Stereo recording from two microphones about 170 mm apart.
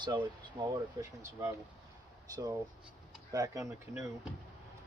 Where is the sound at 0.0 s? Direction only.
25° right (ahead or behind).